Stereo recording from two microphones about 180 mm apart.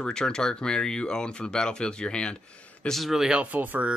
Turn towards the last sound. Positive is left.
turn(degrees=-10)  # may be behind; listen again after turning